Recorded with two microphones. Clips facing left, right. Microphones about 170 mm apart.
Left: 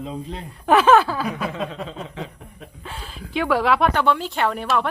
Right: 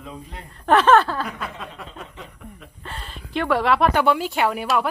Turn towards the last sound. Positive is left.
turn(degrees=-10)  # may be behind; listen again after turning